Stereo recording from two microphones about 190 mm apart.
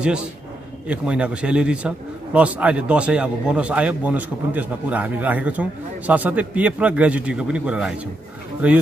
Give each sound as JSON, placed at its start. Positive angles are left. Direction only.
{"t": 0.0, "sound": "a man's voice", "side_deg": -5}